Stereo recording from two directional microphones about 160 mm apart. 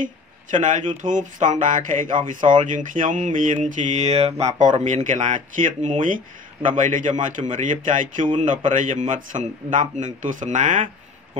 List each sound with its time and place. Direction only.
0.0 s speech: 50° right (ahead or behind)